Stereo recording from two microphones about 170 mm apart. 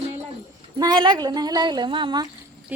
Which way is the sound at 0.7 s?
25° right (ahead or behind).